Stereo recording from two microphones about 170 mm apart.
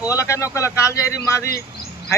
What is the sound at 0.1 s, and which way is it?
Speech, 15° left (ahead or behind).